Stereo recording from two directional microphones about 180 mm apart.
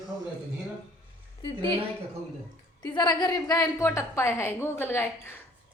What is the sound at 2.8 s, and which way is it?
A woman's voice, 25° left (ahead or behind).